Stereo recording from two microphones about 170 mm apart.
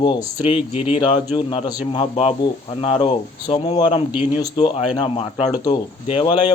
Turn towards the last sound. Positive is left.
turn(degrees=25)  # may be behind; listen again after turning